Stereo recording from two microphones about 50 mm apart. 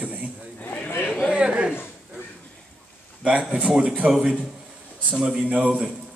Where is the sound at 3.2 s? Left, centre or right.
Centre.